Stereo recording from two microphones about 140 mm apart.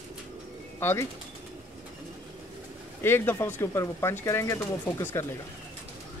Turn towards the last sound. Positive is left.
turn(degrees=20)  # may be behind; listen again after turning